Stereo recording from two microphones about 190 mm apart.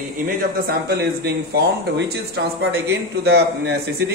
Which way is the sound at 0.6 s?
55° right (ahead or behind).